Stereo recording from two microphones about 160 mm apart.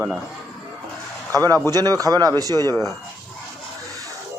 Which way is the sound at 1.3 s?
20° right (ahead or behind).